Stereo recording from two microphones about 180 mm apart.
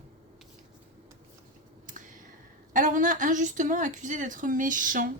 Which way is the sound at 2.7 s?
45° right (ahead or behind).